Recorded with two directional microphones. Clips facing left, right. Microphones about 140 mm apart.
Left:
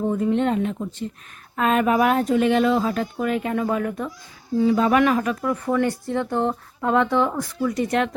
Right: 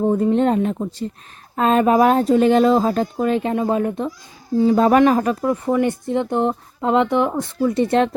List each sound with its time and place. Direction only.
0.0 s speech: 35° right (ahead or behind)
4.5 s speech: 40° right (ahead or behind)
5.6 s speech: 20° right (ahead or behind)